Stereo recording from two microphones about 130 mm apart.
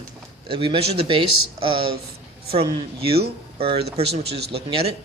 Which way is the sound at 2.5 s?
45° right (ahead or behind).